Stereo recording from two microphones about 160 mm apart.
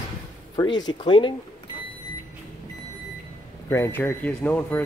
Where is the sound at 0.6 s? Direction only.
25° left (ahead or behind).